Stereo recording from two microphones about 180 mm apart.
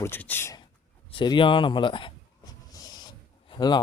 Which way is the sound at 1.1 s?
25° left (ahead or behind).